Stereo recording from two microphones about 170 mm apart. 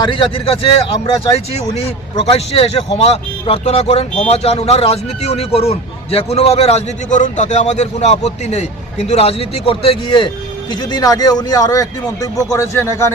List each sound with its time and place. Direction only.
0.0 s a man's voice: 30° left (ahead or behind)